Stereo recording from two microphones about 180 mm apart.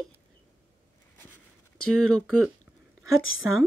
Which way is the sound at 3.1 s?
90° left.